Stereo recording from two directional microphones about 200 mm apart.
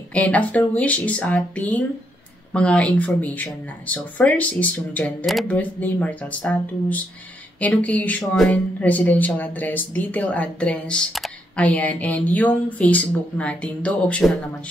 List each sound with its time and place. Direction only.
0.1 s speech: 5° left (ahead or behind)